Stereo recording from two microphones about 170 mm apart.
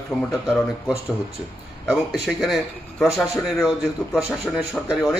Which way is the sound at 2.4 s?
Centre (ahead or behind).